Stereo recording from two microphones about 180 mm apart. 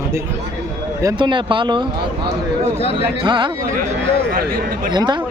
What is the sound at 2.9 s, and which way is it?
Speech, 25° right (ahead or behind).